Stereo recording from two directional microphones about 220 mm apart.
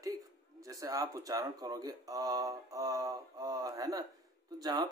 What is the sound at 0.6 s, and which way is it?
Speech, 15° right (ahead or behind).